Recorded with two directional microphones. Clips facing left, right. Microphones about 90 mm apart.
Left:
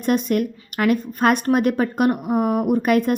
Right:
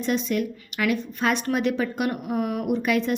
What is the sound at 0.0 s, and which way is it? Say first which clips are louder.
A woman's voice: left 5 dB; 50° left (ahead or behind).